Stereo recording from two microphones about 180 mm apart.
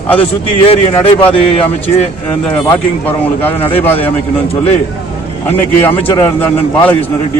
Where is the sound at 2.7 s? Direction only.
10° left (ahead or behind).